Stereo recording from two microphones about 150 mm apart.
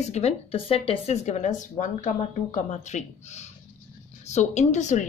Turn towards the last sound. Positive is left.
turn(degrees=55)  # may be behind; listen again after turning